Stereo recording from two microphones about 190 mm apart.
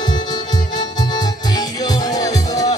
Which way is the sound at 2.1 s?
20° left (ahead or behind).